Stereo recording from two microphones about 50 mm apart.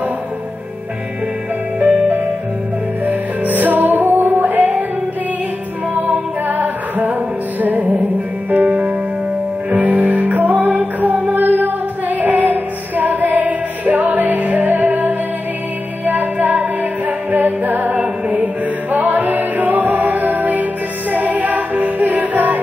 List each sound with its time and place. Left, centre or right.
1.8 s music: right
6.4 s music: right
17.9 s music: right